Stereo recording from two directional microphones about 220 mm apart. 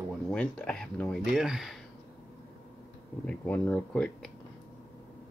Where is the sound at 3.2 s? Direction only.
5° left (ahead or behind).